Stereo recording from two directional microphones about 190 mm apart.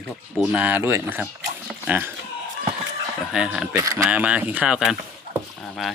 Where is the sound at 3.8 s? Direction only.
15° right (ahead or behind).